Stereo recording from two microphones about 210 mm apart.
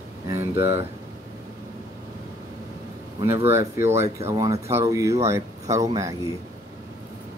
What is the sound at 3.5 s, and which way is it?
Speech, 10° right (ahead or behind).